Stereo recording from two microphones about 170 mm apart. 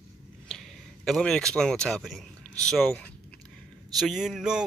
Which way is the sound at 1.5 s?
5° left (ahead or behind).